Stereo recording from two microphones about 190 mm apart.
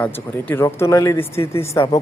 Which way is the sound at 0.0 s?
10° left (ahead or behind).